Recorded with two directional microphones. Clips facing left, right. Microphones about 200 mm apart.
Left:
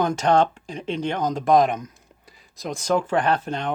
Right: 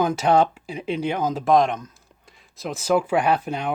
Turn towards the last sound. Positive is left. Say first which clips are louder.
# right 1 dB
turn(degrees=-10)  # may be behind; listen again after turning